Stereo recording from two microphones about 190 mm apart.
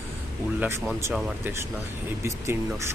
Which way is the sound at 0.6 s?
10° right (ahead or behind).